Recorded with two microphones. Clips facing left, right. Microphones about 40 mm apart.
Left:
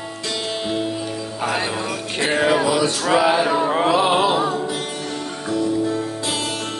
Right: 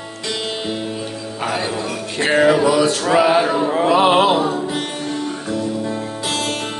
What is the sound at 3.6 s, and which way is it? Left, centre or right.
Music, left.